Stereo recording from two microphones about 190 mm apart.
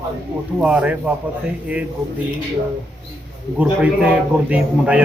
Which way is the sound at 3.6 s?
5° right (ahead or behind).